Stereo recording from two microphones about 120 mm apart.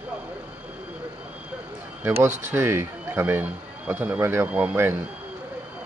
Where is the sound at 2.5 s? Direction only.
20° right (ahead or behind).